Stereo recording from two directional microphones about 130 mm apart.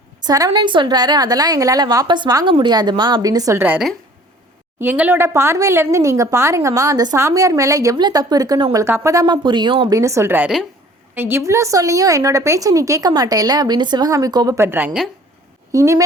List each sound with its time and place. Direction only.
0.3 s a woman's voice: 30° right (ahead or behind)
4.8 s a woman's voice: 15° right (ahead or behind); by 9.9 s 40° right (ahead or behind)
9.9 s a woman's voice: 25° right (ahead or behind)
15.7 s a woman's voice: 25° right (ahead or behind)